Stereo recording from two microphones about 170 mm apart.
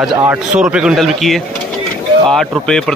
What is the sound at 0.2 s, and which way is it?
A man's voice, 10° right (ahead or behind).